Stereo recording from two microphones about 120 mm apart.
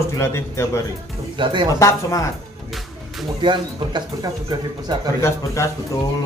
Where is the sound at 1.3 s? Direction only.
40° right (ahead or behind).